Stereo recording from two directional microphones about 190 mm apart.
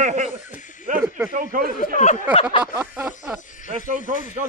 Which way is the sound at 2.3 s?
30° left (ahead or behind).